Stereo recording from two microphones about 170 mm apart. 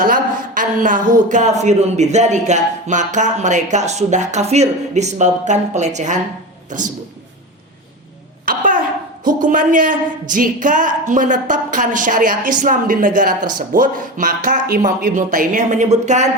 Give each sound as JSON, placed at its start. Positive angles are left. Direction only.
{"t": 0.0, "sound": "speech", "side_deg": -55}
{"t": 8.4, "sound": "a sound", "side_deg": -55}
{"t": 9.2, "sound": "speech", "side_deg": -50}